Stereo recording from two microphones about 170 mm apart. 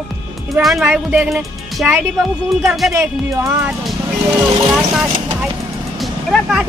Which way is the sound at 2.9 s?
15° right (ahead or behind).